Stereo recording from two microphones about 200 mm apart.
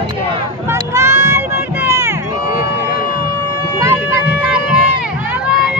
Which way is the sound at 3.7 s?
15° right (ahead or behind).